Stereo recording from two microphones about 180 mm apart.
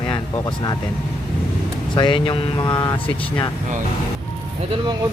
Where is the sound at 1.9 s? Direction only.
25° left (ahead or behind).